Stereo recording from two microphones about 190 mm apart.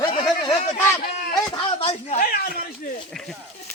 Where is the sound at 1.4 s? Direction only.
25° left (ahead or behind).